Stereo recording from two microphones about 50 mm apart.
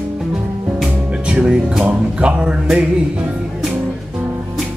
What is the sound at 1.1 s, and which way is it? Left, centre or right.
Music, centre.